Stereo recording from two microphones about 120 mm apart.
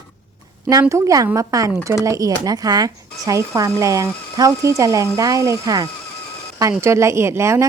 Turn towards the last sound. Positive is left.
turn(degrees=-25)  # may be behind; listen again after turning